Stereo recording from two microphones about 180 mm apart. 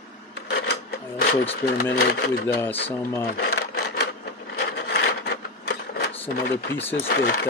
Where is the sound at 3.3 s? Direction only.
65° left (ahead or behind).